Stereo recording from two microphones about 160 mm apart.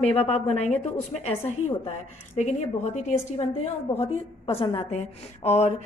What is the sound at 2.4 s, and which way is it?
A woman's voice, 45° left (ahead or behind).